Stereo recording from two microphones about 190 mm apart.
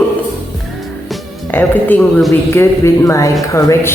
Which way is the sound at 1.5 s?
10° left (ahead or behind).